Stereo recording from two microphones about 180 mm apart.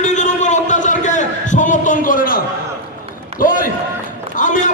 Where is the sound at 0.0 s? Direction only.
40° left (ahead or behind).